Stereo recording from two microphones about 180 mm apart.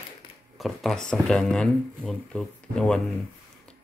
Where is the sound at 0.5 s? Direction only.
Centre (ahead or behind).